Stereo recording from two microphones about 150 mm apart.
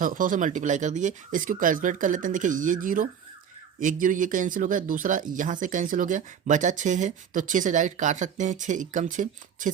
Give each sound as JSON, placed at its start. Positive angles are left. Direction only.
{"t": 0.0, "sound": "speech", "side_deg": -65}